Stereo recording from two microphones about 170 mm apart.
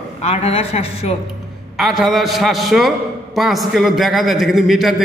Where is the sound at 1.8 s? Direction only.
Centre (ahead or behind).